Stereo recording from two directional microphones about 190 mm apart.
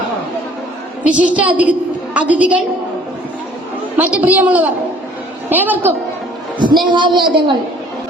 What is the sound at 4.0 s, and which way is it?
A woman's voice, 10° right (ahead or behind).